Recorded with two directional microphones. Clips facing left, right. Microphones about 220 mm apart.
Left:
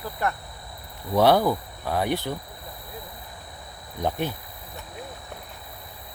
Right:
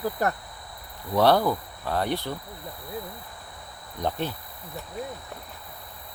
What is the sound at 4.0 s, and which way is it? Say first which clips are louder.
Speech: left 2 dB; 15° left (ahead or behind).